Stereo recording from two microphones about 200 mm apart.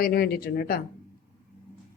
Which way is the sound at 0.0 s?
50° left (ahead or behind).